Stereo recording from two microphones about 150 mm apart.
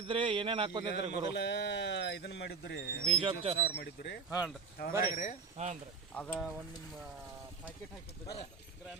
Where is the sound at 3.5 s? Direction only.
90° left.